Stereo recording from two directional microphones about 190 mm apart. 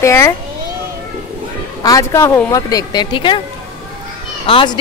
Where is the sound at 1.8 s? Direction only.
20° left (ahead or behind).